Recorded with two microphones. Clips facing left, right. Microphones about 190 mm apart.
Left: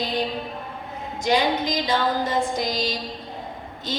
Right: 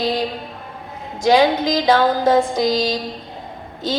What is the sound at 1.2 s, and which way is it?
Music, 90° right.